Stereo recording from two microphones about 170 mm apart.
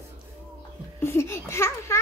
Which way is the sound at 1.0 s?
15° left (ahead or behind).